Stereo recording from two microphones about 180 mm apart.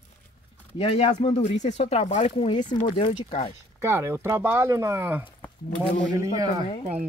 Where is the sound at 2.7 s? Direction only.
45° left (ahead or behind).